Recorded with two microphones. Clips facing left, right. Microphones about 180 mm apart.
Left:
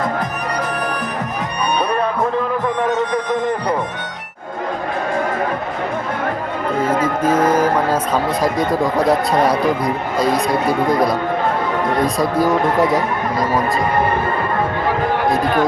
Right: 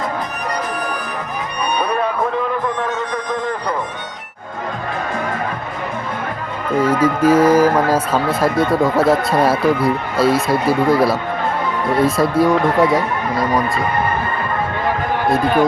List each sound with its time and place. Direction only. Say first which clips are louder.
6.8 s speech: right 4 dB; 10° right (ahead or behind)